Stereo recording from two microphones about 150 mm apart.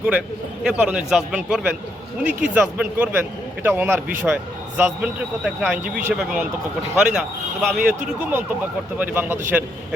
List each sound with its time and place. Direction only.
0.6 s speech: 5° right (ahead or behind)